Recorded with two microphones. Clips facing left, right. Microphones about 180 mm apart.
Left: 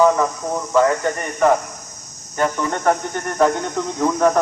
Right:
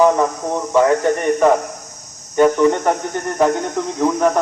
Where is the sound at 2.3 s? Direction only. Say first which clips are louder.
Right 8 dB; 15° right (ahead or behind).